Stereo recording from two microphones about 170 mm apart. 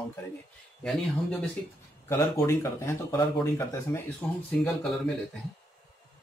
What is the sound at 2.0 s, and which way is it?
Speech, 15° left (ahead or behind).